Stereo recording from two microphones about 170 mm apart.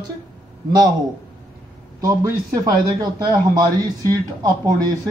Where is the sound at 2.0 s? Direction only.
20° right (ahead or behind).